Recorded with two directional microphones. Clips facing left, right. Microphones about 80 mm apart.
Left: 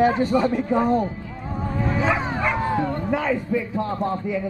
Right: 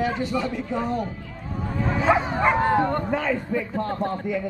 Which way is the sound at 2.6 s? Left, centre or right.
Right.